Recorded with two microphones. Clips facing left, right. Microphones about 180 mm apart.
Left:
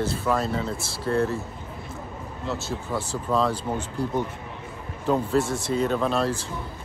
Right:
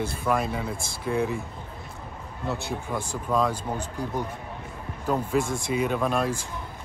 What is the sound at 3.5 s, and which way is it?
Speech, 45° right (ahead or behind).